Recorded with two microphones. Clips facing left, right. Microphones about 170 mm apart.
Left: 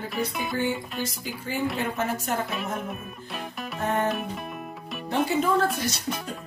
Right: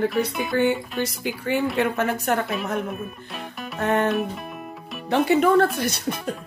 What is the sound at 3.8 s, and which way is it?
Music, 70° right (ahead or behind).